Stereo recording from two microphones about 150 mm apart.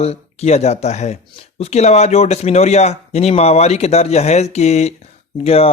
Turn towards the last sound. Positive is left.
turn(degrees=45)  # may be behind; listen again after turning